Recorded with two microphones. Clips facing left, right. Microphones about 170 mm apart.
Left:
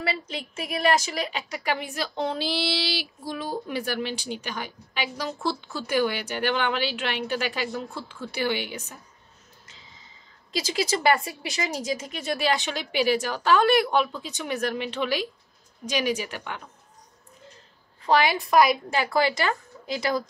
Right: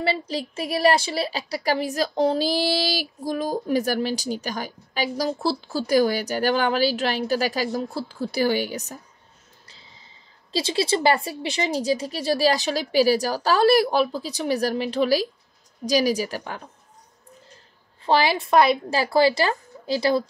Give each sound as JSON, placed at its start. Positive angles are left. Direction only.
{"t": 0.0, "sound": "a woman's voice", "side_deg": -30}
{"t": 9.7, "sound": "a sound", "side_deg": -35}
{"t": 10.5, "sound": "a woman's voice", "side_deg": -30}
{"t": 18.0, "sound": "a woman's voice", "side_deg": -30}